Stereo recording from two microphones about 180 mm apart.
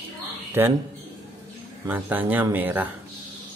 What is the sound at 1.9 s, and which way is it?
Speech, 10° right (ahead or behind).